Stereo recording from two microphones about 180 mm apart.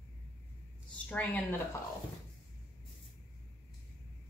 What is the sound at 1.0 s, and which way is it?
Speech, 10° left (ahead or behind).